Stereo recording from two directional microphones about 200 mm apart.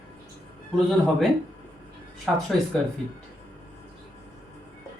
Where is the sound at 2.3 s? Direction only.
Centre (ahead or behind).